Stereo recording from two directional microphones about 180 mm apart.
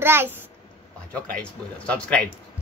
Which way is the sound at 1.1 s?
5° left (ahead or behind).